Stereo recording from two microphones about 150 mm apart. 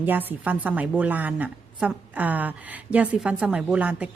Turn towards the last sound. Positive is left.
turn(degrees=-10)  # may be behind; listen again after turning